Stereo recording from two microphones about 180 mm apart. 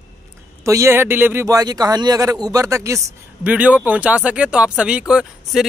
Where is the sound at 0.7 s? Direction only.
15° right (ahead or behind).